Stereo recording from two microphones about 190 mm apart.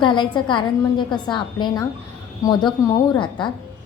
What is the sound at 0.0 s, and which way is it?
A woman's voice, 25° left (ahead or behind).